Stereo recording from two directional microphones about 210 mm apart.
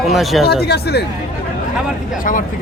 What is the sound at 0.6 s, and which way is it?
Speech, 50° left (ahead or behind).